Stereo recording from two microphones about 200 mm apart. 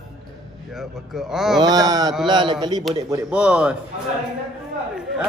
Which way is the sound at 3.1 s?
5° right (ahead or behind).